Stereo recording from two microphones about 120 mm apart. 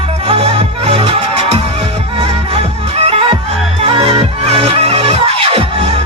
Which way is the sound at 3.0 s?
55° right (ahead or behind).